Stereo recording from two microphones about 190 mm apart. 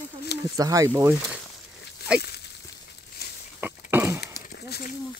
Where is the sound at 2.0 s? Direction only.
60° left (ahead or behind).